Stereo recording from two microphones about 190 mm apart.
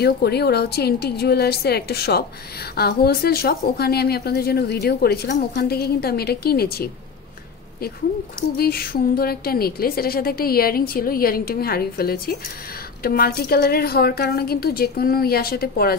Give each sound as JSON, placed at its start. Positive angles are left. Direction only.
{"t": 0.0, "sound": "speech", "side_deg": 55}
{"t": 8.5, "sound": "a woman's voice", "side_deg": 55}